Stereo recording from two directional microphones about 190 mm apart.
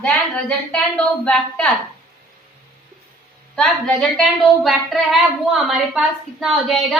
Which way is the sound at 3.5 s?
5° left (ahead or behind).